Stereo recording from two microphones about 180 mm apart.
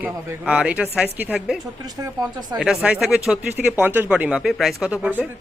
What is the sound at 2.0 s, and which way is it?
Speech, 20° right (ahead or behind).